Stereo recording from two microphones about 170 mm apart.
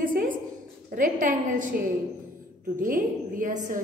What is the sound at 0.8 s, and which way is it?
A woman's voice, 50° right (ahead or behind).